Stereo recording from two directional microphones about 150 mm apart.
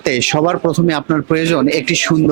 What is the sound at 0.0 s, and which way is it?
Speech, 10° right (ahead or behind).